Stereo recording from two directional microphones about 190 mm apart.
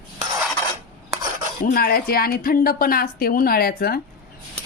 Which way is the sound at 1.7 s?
50° left (ahead or behind).